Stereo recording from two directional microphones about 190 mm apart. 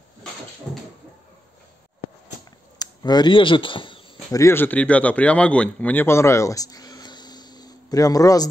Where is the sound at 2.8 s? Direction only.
20° left (ahead or behind).